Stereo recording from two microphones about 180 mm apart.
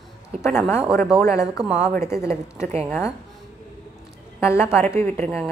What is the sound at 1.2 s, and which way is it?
Speech, 15° left (ahead or behind).